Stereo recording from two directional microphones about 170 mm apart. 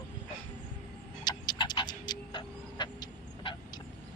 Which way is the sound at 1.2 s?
25° left (ahead or behind).